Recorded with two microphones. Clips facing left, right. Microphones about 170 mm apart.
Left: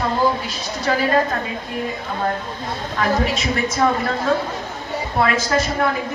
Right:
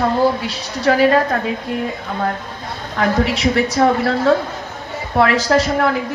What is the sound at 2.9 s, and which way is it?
A woman's voice, 70° right (ahead or behind).